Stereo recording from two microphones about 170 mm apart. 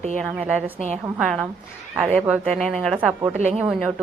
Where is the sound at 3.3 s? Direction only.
40° right (ahead or behind).